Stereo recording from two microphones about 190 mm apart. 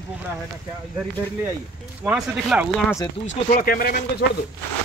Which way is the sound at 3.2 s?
45° left (ahead or behind).